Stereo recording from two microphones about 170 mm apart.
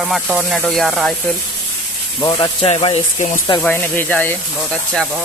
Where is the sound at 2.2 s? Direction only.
25° left (ahead or behind).